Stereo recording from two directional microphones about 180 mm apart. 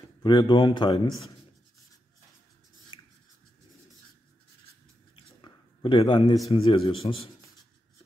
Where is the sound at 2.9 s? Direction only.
30° left (ahead or behind).